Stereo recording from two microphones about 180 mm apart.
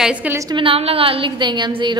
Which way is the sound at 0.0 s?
5° right (ahead or behind).